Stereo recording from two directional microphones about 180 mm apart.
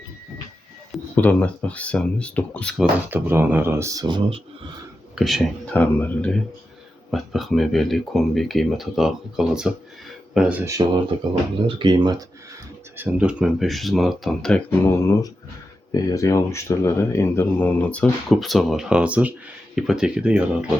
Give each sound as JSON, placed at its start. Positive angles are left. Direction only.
{"t": 1.1, "sound": "speech", "side_deg": 10}
{"t": 3.1, "sound": "speech", "side_deg": -10}
{"t": 5.1, "sound": "speech", "side_deg": 0}
{"t": 10.7, "sound": "speech", "side_deg": -20}
{"t": 13.0, "sound": "speech", "side_deg": -5}